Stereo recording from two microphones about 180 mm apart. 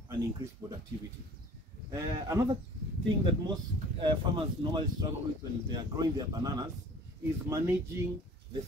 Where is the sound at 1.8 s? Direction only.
15° right (ahead or behind).